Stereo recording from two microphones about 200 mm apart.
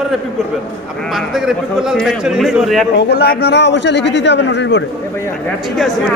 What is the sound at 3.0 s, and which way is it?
A man's voice, 55° left (ahead or behind).